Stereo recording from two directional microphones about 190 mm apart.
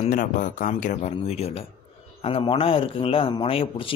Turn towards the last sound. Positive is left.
turn(degrees=30)  # may be behind; listen again after turning